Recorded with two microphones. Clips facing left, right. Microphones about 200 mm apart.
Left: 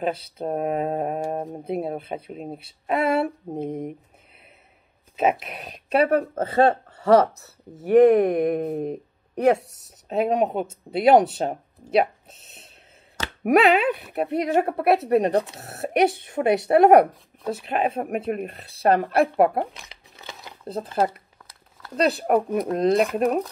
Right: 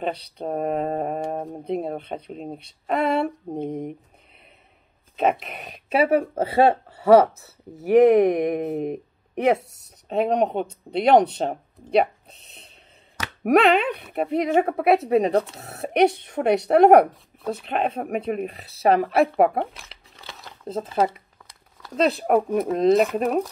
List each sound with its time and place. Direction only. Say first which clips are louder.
0.0 s speech: left 1 dB; 5° left (ahead or behind)
5.1 s speech: even; 5° left (ahead or behind)
8.7 s a sound: right 1 dB; 15° right (ahead or behind)
9.4 s speech: left 1 dB; centre (ahead or behind)